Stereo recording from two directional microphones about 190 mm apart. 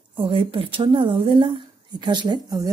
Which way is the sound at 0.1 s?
25° right (ahead or behind).